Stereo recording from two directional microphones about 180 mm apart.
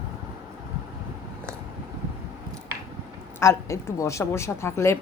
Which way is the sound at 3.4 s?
15° left (ahead or behind).